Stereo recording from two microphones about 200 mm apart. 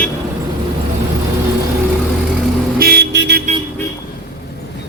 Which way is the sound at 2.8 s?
50° right (ahead or behind).